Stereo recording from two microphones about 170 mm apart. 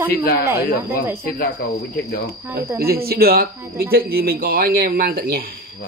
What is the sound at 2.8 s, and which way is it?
Speech, 65° right (ahead or behind).